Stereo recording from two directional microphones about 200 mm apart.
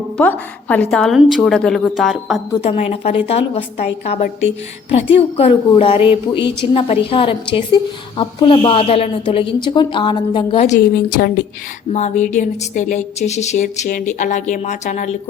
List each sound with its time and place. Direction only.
0.2 s a woman's voice: 10° left (ahead or behind)
2.6 s a woman's voice: 30° left (ahead or behind)
10.8 s a woman's voice: 50° left (ahead or behind)
11.9 s speech: 35° left (ahead or behind)